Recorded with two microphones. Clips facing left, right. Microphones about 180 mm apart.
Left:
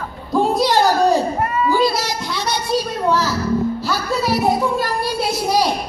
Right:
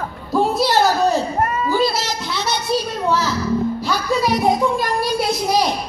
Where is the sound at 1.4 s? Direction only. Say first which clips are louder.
Left 1 dB; 45° right (ahead or behind).